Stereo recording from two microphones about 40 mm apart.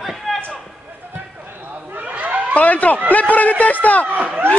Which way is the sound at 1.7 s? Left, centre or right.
Right.